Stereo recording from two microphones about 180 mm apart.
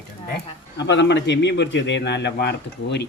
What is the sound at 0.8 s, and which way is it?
A man's voice, 75° left (ahead or behind).